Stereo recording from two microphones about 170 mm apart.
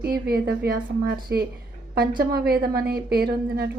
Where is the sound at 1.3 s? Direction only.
15° right (ahead or behind).